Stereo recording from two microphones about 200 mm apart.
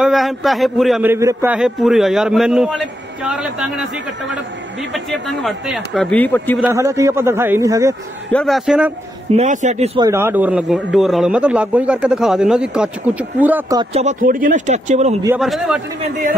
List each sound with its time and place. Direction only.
0.0 s a man's voice: centre (ahead or behind)
1.1 s a man's voice: 10° right (ahead or behind)
4.9 s a man's voice: centre (ahead or behind)
6.6 s a man's voice: 15° right (ahead or behind)
8.3 s a man's voice: 5° left (ahead or behind)
9.3 s speech: 35° right (ahead or behind)
9.9 s a man's voice: 15° right (ahead or behind)
13.9 s speech: 40° right (ahead or behind)
15.2 s a man's voice: 5° right (ahead or behind)
16.0 s speech: 40° right (ahead or behind)